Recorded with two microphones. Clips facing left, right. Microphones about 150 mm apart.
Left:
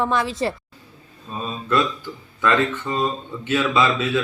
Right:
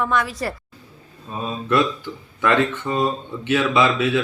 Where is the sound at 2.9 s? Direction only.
15° right (ahead or behind).